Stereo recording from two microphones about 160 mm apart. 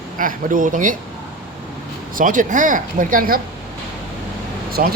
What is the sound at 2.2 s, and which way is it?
A man's voice, 55° right (ahead or behind).